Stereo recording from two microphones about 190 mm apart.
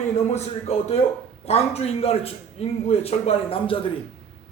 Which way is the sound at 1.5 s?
35° left (ahead or behind).